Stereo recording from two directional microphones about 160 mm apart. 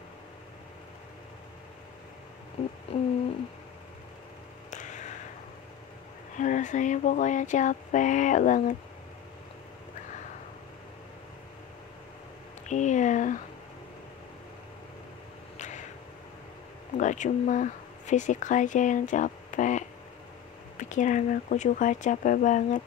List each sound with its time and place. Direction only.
4.6 s a sound: 50° left (ahead or behind)
6.3 s speech: 50° left (ahead or behind)
12.6 s speech: 50° left (ahead or behind)
16.9 s speech: 50° left (ahead or behind)